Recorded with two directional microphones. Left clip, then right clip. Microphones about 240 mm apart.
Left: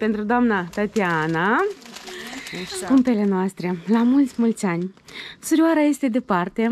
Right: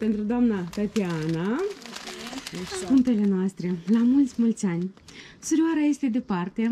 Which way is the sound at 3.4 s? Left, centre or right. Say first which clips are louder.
Left 5 dB; centre.